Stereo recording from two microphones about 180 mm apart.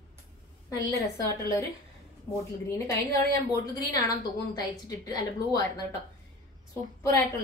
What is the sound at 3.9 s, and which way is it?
A woman's voice, 20° left (ahead or behind).